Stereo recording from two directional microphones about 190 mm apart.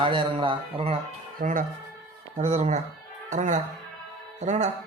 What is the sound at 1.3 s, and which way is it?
Speech, 45° right (ahead or behind).